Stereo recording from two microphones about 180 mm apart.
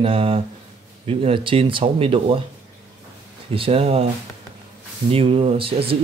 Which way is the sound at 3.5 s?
30° right (ahead or behind).